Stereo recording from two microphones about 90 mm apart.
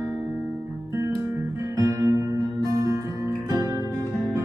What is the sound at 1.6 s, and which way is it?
Guitar, 35° right (ahead or behind).